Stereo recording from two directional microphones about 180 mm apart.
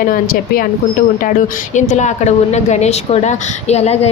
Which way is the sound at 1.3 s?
45° left (ahead or behind).